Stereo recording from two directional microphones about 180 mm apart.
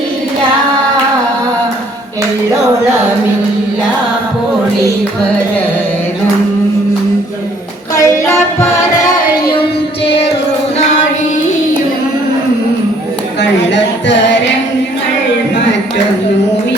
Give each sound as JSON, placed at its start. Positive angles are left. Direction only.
{"t": 7.9, "sound": "music", "side_deg": 15}